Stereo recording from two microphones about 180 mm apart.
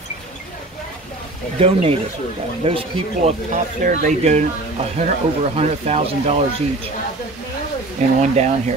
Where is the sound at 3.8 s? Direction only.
40° right (ahead or behind).